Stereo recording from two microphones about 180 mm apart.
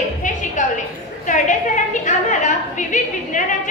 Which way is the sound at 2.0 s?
45° left (ahead or behind).